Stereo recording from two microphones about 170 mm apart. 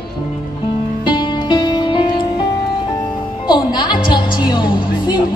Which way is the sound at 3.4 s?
25° left (ahead or behind).